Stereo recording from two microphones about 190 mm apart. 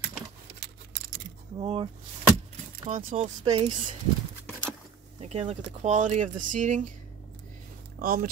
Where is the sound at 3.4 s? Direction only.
25° right (ahead or behind).